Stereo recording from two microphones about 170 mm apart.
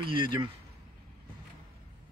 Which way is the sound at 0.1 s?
25° right (ahead or behind).